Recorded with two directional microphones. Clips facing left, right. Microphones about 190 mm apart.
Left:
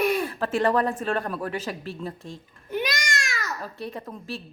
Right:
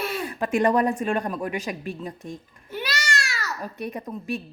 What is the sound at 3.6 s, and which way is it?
Speech, 15° right (ahead or behind).